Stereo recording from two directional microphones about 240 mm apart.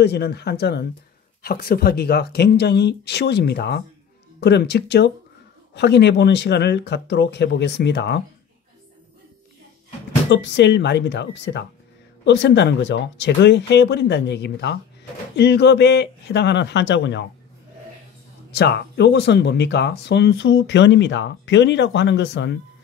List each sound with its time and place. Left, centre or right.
0.0 s speech: left
10.3 s speech: left
18.5 s speech: left